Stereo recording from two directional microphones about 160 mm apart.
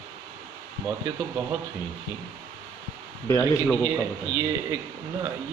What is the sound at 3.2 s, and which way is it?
Speech, 20° left (ahead or behind).